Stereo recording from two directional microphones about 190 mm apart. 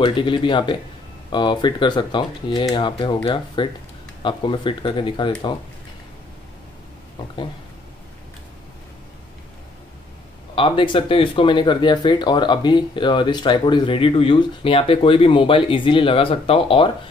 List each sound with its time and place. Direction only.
0.0 s speech: 25° left (ahead or behind)
10.5 s speech: 25° left (ahead or behind)